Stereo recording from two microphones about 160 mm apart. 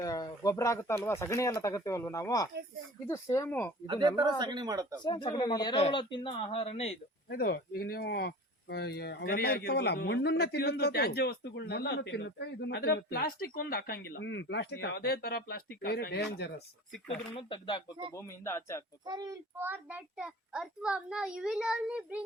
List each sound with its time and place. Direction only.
0.0 s speech: 25° left (ahead or behind)
3.8 s speech: 25° right (ahead or behind)
5.0 s speech: 30° left (ahead or behind)
7.3 s speech: 70° left (ahead or behind); by 16.6 s 90° left
17.3 s speech: 30° left (ahead or behind)
18.1 s speech: 15° left (ahead or behind)
19.0 s speech: 25° right (ahead or behind)
19.5 s a child's voice: 10° right (ahead or behind)